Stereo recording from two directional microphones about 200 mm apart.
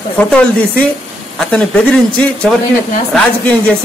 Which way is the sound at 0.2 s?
5° left (ahead or behind).